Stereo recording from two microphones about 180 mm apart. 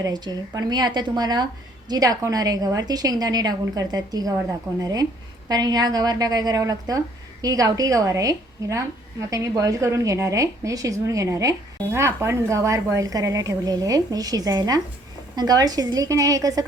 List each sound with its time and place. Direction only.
0.0 s a woman's voice: 20° right (ahead or behind)